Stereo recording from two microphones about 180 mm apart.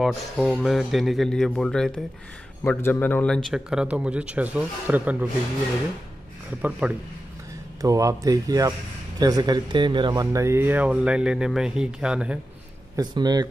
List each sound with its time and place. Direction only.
0.0 s a man's voice: centre (ahead or behind)
3.4 s speech: 5° right (ahead or behind)
6.8 s speech: 5° right (ahead or behind)
7.8 s speech: 20° right (ahead or behind)
12.9 s speech: 20° right (ahead or behind)